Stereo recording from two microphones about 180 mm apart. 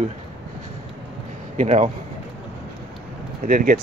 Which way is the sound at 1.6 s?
40° right (ahead or behind).